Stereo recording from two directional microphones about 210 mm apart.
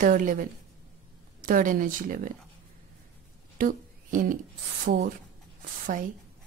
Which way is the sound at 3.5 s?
40° right (ahead or behind).